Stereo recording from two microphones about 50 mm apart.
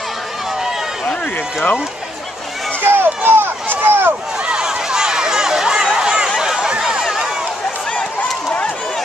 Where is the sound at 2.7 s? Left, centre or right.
Right.